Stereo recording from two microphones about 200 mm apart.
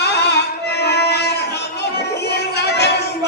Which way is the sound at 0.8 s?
55° left (ahead or behind).